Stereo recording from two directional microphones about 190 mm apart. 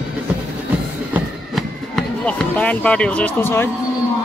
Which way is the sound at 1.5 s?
5° left (ahead or behind).